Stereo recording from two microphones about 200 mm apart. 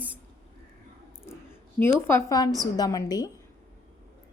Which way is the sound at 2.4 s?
20° left (ahead or behind).